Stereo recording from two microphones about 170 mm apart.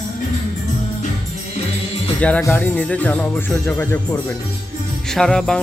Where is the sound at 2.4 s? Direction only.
10° left (ahead or behind).